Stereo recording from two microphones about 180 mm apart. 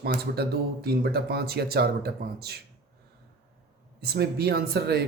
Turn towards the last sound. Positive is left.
turn(degrees=-60)  # may be behind; listen again after turning